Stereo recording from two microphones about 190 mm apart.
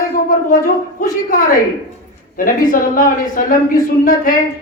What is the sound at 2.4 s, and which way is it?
Speech, 45° left (ahead or behind).